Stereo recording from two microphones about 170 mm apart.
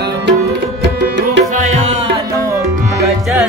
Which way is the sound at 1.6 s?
45° right (ahead or behind).